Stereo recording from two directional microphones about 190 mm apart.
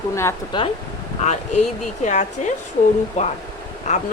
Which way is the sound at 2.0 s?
40° left (ahead or behind).